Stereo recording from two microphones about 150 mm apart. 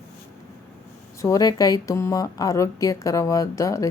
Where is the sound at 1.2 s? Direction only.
25° left (ahead or behind).